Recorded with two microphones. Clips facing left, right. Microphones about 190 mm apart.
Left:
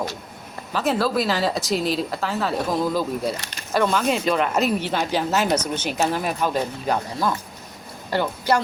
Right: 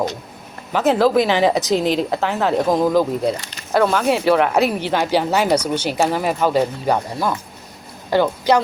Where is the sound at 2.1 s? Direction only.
90° right.